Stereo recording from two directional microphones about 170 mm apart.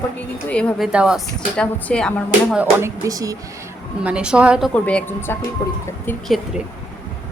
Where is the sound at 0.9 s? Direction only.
5° right (ahead or behind).